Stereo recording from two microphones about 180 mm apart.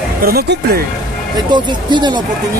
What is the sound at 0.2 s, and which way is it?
Speech, 60° right (ahead or behind).